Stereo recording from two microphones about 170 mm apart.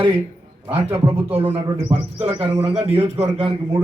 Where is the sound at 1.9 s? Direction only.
30° right (ahead or behind).